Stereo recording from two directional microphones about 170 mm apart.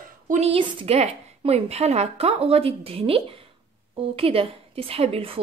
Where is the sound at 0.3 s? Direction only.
35° right (ahead or behind).